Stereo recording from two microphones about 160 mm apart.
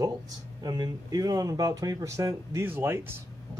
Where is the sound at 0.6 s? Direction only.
25° right (ahead or behind).